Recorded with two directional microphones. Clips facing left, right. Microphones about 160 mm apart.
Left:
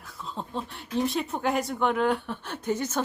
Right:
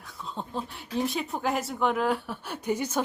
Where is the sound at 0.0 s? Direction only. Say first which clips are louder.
Even; centre (ahead or behind).